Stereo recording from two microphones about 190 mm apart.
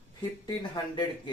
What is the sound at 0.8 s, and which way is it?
Speech, 20° left (ahead or behind).